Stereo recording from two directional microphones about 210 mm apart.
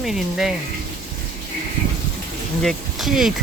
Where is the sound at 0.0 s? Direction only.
Centre (ahead or behind).